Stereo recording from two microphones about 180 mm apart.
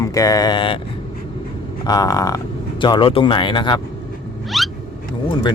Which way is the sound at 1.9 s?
20° left (ahead or behind).